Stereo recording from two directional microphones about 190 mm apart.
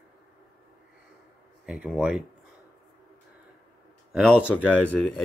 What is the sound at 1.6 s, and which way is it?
Speech, centre (ahead or behind).